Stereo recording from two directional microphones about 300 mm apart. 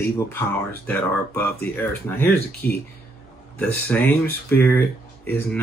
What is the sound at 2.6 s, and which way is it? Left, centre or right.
Speech, left.